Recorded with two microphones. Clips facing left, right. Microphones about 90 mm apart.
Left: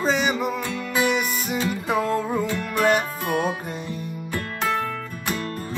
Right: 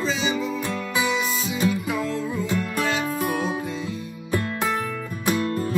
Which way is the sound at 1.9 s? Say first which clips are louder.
Left 4 dB; 45° left (ahead or behind).